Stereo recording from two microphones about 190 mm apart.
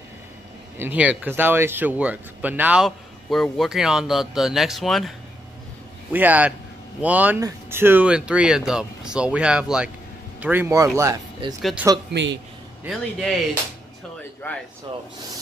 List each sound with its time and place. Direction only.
0.7 s speech: 10° right (ahead or behind)
6.1 s speech: 10° right (ahead or behind)
12.1 s a man's voice: 65° right (ahead or behind)
12.8 s speech: centre (ahead or behind)
14.4 s speech: 10° left (ahead or behind)